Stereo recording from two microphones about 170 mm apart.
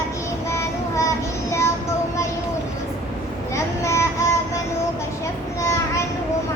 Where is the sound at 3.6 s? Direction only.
15° left (ahead or behind).